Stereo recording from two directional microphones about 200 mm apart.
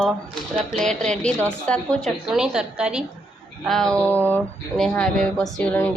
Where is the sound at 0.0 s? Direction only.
Centre (ahead or behind).